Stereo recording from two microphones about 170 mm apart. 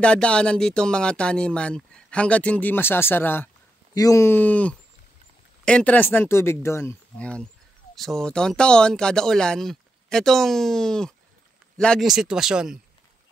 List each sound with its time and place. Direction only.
0.0 s speech: 5° left (ahead or behind)